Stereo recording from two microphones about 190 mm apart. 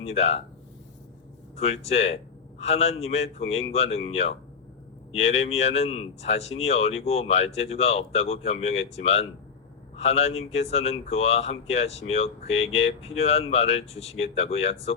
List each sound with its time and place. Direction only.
0.0 s speech: 35° left (ahead or behind)
1.5 s speech: 35° left (ahead or behind)